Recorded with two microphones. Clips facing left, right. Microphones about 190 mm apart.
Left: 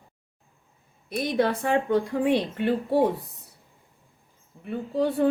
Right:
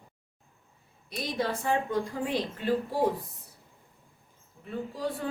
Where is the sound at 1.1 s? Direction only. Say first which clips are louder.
Left 7 dB; 60° left (ahead or behind).